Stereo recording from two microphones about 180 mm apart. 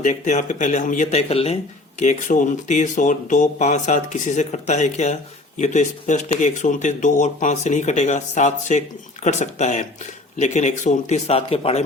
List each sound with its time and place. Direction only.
0.0 s speech: 40° left (ahead or behind)